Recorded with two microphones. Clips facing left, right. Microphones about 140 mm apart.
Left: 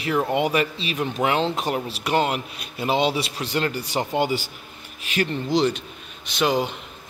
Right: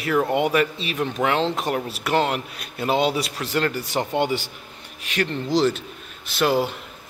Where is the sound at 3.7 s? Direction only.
Centre (ahead or behind).